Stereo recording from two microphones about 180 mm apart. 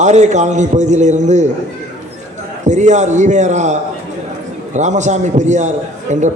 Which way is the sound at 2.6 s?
40° right (ahead or behind).